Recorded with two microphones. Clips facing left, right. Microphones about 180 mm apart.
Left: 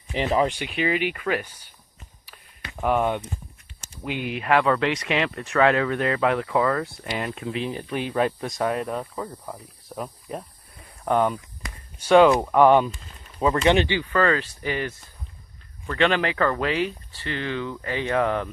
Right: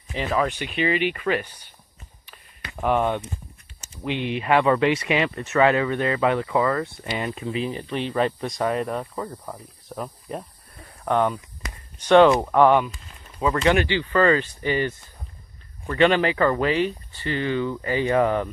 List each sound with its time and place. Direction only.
0.5 s speech: 10° left (ahead or behind)
2.3 s a sound: 5° left (ahead or behind)
4.0 s speech: 5° left (ahead or behind)
11.1 s speech: 10° left (ahead or behind)
12.6 s speech: 20° left (ahead or behind)
14.1 s speech: 5° right (ahead or behind)